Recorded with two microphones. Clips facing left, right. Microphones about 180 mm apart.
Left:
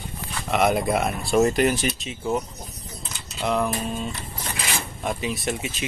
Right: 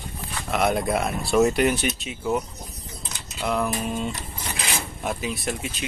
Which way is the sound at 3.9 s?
15° right (ahead or behind).